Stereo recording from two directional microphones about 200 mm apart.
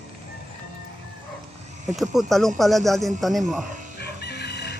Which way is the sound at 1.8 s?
Centre (ahead or behind).